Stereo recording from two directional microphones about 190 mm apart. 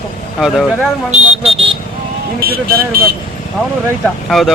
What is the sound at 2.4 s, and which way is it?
Speech, 50° right (ahead or behind).